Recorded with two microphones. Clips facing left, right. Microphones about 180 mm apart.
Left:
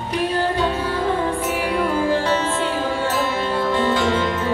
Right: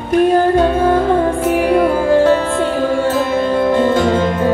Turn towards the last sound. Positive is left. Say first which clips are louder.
# right 6 dB
turn(degrees=-45)  # may be behind; listen again after turning